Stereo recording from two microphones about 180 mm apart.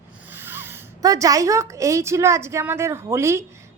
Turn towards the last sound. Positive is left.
turn(degrees=-15)  # may be behind; listen again after turning